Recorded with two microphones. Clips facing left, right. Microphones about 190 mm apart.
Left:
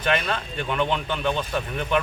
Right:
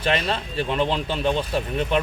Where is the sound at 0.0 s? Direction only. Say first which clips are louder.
Right 1 dB; 30° right (ahead or behind).